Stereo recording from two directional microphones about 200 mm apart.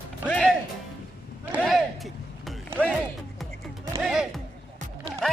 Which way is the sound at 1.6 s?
Centre (ahead or behind).